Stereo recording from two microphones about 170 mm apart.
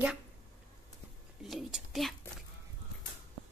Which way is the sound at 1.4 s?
Centre (ahead or behind).